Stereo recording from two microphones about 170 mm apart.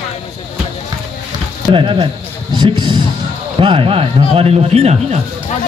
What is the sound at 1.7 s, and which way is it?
Speech, 30° right (ahead or behind).